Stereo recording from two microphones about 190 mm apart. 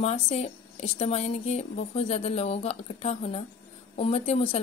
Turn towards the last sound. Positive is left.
turn(degrees=30)  # may be behind; listen again after turning